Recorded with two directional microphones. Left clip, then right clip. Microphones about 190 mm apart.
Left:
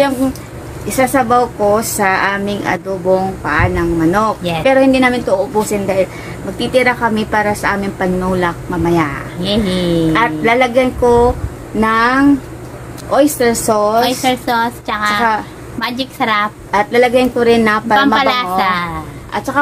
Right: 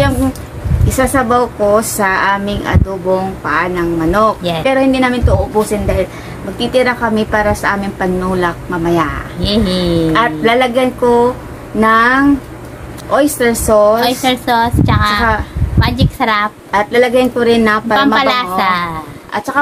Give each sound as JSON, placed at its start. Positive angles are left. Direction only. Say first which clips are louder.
{"t": 0.9, "sound": "a woman's voice", "louder": "even", "side_deg": 5}
{"t": 4.4, "sound": "a woman's voice", "louder": "right 1 dB", "side_deg": -20}
{"t": 4.6, "sound": "a woman's voice", "louder": "left 2 dB", "side_deg": 15}
{"t": 9.8, "sound": "a woman's voice", "louder": "right 1 dB", "side_deg": -20}
{"t": 10.1, "sound": "a woman's voice", "louder": "right 1 dB", "side_deg": 5}
{"t": 14.0, "sound": "a woman's voice", "louder": "right 1 dB", "side_deg": -15}
{"t": 16.7, "sound": "a woman's voice", "louder": "even", "side_deg": 10}
{"t": 17.9, "sound": "a woman's voice", "louder": "even", "side_deg": -20}
{"t": 19.3, "sound": "a woman's voice", "louder": "right 1 dB", "side_deg": 5}